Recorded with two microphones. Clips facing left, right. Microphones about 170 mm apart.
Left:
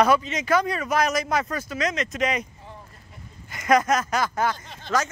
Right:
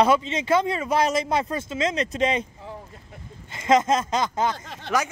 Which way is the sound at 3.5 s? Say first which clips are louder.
Right 1 dB; 25° right (ahead or behind).